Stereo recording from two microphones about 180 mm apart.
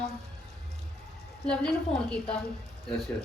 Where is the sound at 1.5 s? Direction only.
5° left (ahead or behind).